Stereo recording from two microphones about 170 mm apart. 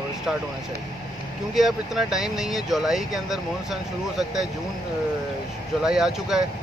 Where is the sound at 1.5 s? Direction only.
Centre (ahead or behind).